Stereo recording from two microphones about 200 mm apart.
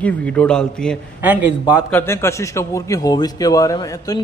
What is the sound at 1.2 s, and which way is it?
Speech, 10° right (ahead or behind).